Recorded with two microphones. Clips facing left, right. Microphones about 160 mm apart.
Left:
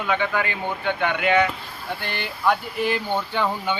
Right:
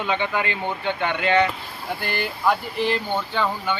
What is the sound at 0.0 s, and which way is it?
Speech, 20° right (ahead or behind).